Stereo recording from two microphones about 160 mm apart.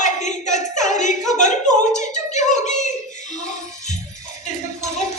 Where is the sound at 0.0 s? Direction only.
50° left (ahead or behind).